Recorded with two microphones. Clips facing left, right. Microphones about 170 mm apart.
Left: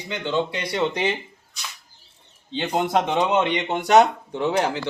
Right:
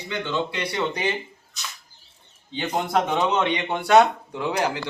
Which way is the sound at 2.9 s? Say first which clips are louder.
Left 1 dB; 20° left (ahead or behind).